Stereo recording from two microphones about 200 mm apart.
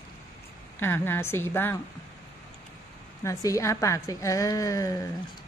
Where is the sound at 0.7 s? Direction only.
10° left (ahead or behind).